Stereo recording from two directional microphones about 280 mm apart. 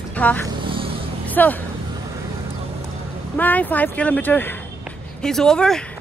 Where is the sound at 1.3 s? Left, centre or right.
Centre.